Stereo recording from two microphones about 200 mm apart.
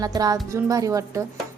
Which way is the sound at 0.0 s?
20° right (ahead or behind).